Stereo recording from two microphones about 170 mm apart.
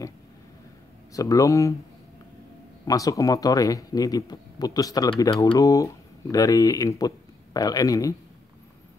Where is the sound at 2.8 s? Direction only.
20° left (ahead or behind).